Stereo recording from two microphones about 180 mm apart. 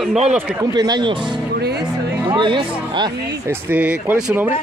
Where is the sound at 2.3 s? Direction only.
25° right (ahead or behind).